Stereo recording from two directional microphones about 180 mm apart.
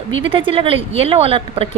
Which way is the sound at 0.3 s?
30° right (ahead or behind).